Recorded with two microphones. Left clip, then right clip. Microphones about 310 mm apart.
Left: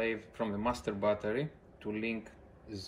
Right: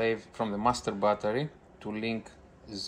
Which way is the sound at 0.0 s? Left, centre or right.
Centre.